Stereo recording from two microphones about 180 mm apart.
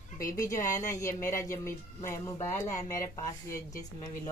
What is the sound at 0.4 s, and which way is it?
Speech, 15° left (ahead or behind).